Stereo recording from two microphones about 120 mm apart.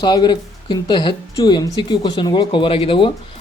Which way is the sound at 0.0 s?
40° left (ahead or behind).